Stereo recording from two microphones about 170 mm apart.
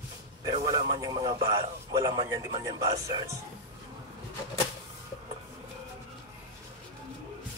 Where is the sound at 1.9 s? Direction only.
20° right (ahead or behind).